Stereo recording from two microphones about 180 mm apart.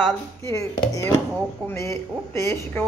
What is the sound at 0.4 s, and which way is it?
Speech, 15° left (ahead or behind).